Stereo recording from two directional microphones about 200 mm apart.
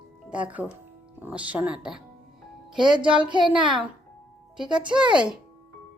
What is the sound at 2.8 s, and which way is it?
Speech, 25° right (ahead or behind).